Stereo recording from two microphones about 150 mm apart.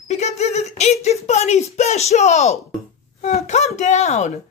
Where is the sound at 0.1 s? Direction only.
50° left (ahead or behind).